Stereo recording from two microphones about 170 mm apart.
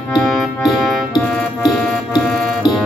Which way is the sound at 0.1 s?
5° left (ahead or behind).